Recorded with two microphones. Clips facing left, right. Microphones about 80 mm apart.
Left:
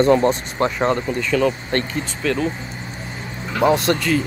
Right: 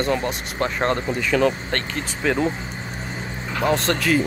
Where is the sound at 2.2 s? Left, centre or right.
Centre.